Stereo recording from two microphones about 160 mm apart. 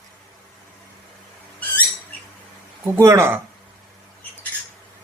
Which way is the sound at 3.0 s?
15° right (ahead or behind).